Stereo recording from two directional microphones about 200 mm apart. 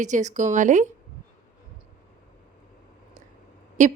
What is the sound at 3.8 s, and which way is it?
Speech, 35° right (ahead or behind).